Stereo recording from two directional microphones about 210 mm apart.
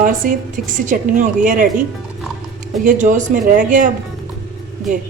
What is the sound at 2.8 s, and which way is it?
A woman's voice, 35° right (ahead or behind).